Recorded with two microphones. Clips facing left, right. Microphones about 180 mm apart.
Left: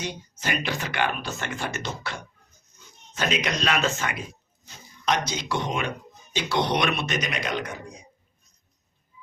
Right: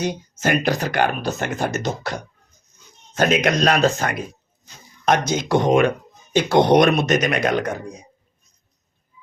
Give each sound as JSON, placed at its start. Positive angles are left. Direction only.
{"t": 0.0, "sound": "speech", "side_deg": -45}
{"t": 5.0, "sound": "speech", "side_deg": -50}